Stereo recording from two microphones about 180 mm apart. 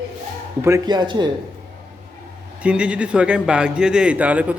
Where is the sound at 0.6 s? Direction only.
20° right (ahead or behind).